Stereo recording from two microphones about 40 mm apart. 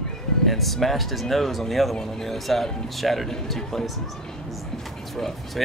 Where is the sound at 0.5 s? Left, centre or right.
Centre.